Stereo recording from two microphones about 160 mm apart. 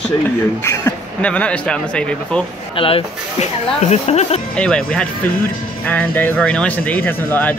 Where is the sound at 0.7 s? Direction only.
10° left (ahead or behind).